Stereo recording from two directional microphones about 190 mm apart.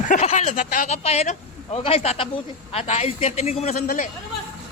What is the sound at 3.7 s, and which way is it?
Speech, 50° left (ahead or behind).